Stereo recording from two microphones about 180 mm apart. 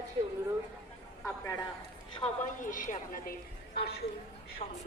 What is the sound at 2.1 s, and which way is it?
A woman's voice, 40° left (ahead or behind).